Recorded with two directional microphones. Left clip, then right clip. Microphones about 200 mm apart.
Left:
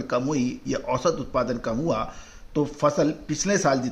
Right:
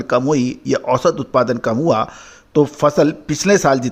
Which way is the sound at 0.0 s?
45° right (ahead or behind).